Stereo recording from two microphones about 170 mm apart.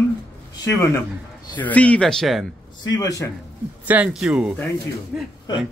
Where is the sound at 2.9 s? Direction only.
20° left (ahead or behind).